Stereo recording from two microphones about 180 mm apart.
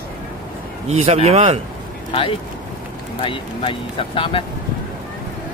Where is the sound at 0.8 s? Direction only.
35° right (ahead or behind).